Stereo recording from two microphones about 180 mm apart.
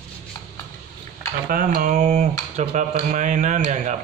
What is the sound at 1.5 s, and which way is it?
A man's voice, 50° right (ahead or behind).